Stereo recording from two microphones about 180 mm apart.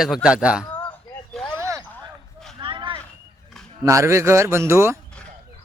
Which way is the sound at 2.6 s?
25° right (ahead or behind).